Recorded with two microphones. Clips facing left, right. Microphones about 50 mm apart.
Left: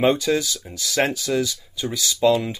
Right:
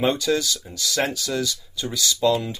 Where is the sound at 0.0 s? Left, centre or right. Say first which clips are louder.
Left 2 dB; left.